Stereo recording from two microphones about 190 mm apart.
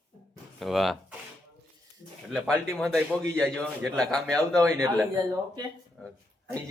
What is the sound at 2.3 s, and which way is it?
Speech, 5° left (ahead or behind).